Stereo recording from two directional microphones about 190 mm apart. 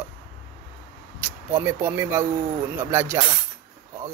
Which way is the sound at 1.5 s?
10° right (ahead or behind).